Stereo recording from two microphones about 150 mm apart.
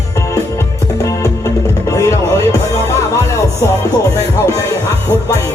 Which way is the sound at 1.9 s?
20° left (ahead or behind).